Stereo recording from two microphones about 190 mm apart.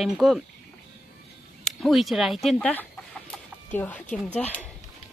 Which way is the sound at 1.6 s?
Centre (ahead or behind).